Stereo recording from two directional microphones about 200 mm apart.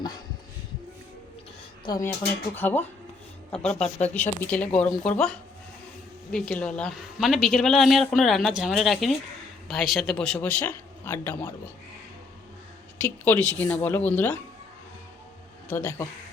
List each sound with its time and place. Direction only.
1.8 s a woman's voice: 20° left (ahead or behind)
13.0 s speech: 10° left (ahead or behind)
15.7 s speech: 10° left (ahead or behind)